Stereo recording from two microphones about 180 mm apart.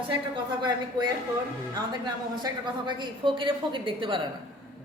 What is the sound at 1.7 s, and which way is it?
A woman's voice, 25° right (ahead or behind).